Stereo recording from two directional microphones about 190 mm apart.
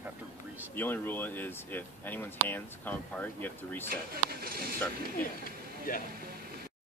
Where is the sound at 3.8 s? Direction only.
50° right (ahead or behind).